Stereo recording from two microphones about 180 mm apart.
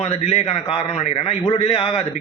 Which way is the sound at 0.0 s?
35° left (ahead or behind).